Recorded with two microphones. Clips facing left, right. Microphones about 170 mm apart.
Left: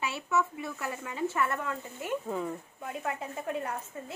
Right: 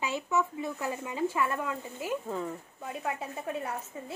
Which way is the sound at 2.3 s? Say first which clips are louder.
Left 1 dB; centre (ahead or behind).